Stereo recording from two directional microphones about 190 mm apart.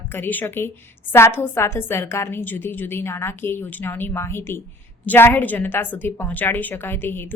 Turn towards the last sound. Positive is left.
turn(degrees=10)  # may be behind; listen again after turning